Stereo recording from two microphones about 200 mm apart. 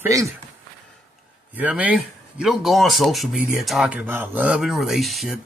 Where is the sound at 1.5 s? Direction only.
10° right (ahead or behind).